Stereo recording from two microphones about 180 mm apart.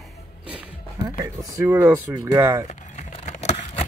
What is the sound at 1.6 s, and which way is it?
Speech, 15° right (ahead or behind).